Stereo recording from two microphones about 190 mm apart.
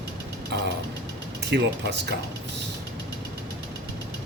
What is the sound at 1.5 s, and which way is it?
Speech, 65° right (ahead or behind).